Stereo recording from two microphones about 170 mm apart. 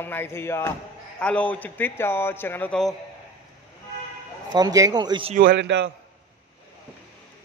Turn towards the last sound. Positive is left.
turn(degrees=-90)